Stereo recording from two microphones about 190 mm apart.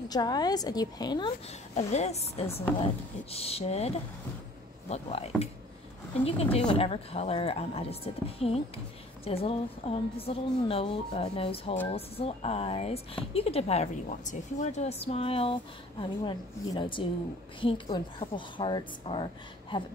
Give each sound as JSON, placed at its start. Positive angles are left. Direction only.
{"t": 0.1, "sound": "a woman's voice", "side_deg": 20}
{"t": 1.8, "sound": "a woman's voice", "side_deg": 35}
{"t": 2.4, "sound": "speech", "side_deg": 10}
{"t": 3.3, "sound": "a woman's voice", "side_deg": 30}